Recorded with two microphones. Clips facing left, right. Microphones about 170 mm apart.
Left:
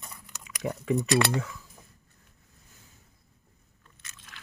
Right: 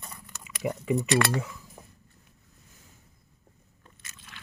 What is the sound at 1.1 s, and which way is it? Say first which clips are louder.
Speech: even; 15° left (ahead or behind).